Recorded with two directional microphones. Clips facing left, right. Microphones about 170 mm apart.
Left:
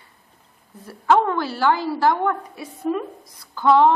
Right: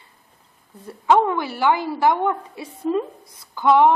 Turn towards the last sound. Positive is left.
turn(degrees=-15)  # may be behind; listen again after turning